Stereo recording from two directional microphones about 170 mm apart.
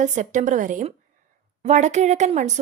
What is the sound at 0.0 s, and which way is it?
Speech, 45° right (ahead or behind).